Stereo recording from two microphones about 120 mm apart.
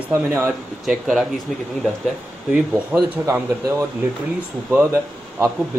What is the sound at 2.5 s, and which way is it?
Speech, 10° right (ahead or behind).